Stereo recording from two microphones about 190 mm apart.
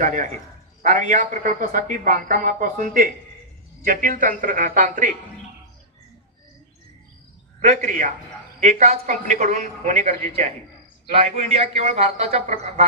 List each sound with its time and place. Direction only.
0.0 s a woman's voice: 40° right (ahead or behind)
7.6 s a woman's voice: 35° right (ahead or behind)